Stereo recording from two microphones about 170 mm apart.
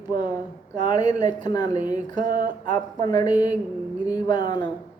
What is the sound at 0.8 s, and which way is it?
Speech, 25° left (ahead or behind).